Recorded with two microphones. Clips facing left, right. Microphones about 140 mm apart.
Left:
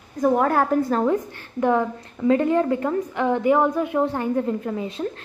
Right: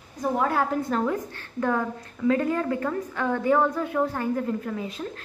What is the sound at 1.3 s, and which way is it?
A woman's voice, 20° left (ahead or behind).